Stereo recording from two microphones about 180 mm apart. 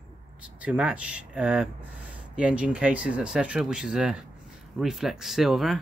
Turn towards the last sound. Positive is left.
turn(degrees=0)  # may be behind; listen again after turning